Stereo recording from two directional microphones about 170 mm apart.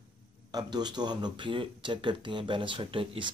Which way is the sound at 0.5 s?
25° right (ahead or behind).